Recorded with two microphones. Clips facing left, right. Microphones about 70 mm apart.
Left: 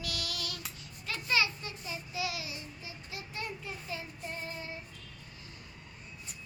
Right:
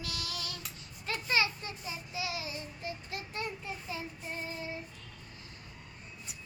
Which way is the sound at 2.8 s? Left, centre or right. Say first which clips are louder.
Right 5 dB; right.